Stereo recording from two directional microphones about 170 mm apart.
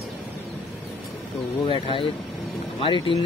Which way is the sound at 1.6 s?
30° left (ahead or behind).